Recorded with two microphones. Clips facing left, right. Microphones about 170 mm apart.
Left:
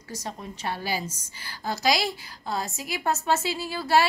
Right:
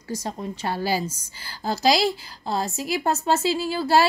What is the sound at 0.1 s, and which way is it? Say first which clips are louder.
A woman's voice: right 6 dB; 30° right (ahead or behind).